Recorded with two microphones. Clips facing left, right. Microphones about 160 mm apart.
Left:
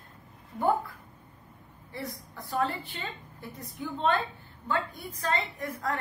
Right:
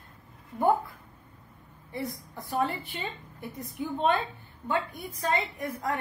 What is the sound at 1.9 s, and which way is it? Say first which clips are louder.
A woman's voice: right 4 dB; 20° right (ahead or behind).